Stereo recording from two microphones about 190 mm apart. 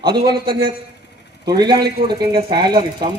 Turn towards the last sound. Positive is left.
turn(degrees=-25)  # may be behind; listen again after turning